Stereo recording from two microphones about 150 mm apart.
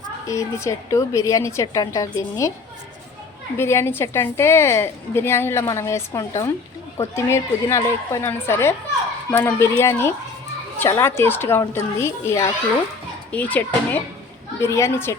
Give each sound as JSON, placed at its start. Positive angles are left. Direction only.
{"t": 0.3, "sound": "a woman's voice", "side_deg": 20}
{"t": 3.6, "sound": "a woman's voice", "side_deg": 15}